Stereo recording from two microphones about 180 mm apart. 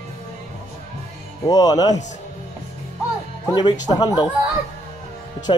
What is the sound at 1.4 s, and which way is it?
Speech, 20° left (ahead or behind).